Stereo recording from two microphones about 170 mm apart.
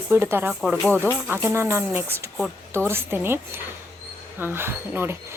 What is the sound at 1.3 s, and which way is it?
Speech, 15° right (ahead or behind).